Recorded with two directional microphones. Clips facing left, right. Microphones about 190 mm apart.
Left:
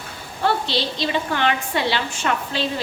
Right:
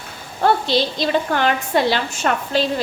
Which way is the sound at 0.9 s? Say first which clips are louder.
Right 4 dB; 45° right (ahead or behind).